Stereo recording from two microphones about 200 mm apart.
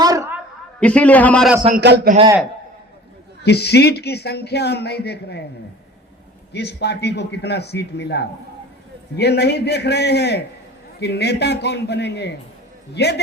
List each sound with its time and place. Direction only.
0.0 s a sound: 15° right (ahead or behind)
0.8 s a man's voice: 5° left (ahead or behind)
1.8 s a man's voice: 60° right (ahead or behind)
3.4 s speech: 55° left (ahead or behind)
6.5 s speech: 55° left (ahead or behind)